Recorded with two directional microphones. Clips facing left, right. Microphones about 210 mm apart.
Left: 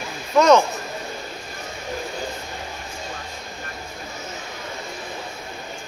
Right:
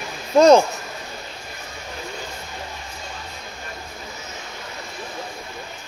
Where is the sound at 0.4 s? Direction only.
30° right (ahead or behind).